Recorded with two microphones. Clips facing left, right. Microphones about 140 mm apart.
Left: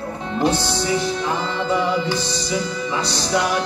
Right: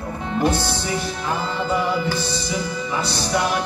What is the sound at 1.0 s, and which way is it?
Music, 10° right (ahead or behind).